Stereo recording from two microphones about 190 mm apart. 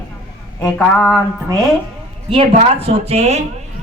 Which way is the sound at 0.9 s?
5° left (ahead or behind).